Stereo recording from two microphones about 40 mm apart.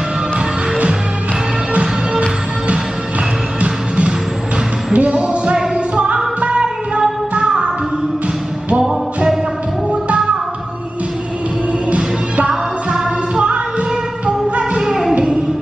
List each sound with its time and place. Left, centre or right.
1.7 s music: right
3.6 s music: right
12.4 s music: centre
14.8 s music: centre